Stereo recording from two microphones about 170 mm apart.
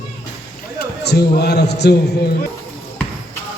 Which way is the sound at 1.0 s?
75° left (ahead or behind).